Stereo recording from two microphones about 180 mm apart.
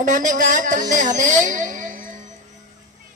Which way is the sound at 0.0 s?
45° right (ahead or behind).